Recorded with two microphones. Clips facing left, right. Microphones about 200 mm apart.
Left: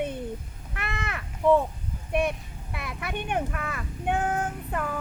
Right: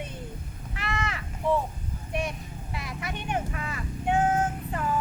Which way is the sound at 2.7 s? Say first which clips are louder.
Left 2 dB; 55° left (ahead or behind).